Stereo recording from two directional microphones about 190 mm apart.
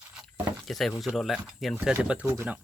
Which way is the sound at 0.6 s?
Centre (ahead or behind).